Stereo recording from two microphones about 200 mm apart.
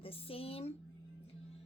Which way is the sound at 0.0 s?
30° left (ahead or behind).